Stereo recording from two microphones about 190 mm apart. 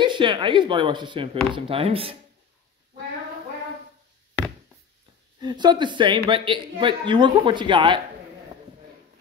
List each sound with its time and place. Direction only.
0.0 s speech: 25° right (ahead or behind)
5.4 s speech: 20° right (ahead or behind)